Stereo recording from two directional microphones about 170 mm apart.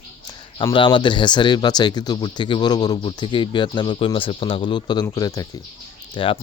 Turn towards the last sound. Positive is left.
turn(degrees=30)  # may be behind; listen again after turning